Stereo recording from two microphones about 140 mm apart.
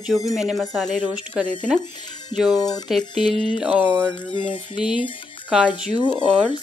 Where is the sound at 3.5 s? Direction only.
10° right (ahead or behind).